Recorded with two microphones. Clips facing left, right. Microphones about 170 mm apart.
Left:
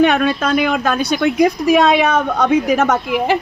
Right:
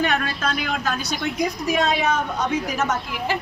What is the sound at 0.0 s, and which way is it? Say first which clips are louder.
A woman's voice: left 9 dB; 70° left (ahead or behind).